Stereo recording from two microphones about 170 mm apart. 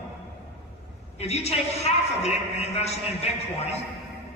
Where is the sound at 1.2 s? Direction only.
40° left (ahead or behind).